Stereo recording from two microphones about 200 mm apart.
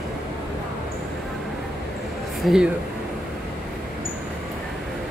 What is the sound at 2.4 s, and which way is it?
Speech, centre (ahead or behind).